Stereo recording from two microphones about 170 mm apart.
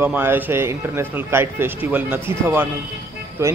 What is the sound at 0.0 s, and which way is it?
Speech, 10° right (ahead or behind).